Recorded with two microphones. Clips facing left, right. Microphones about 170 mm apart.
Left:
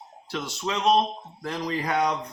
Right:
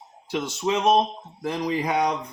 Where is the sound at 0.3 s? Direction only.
20° right (ahead or behind).